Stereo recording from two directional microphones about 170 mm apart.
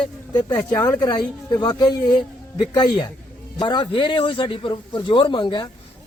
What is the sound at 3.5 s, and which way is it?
A man's voice, 30° left (ahead or behind).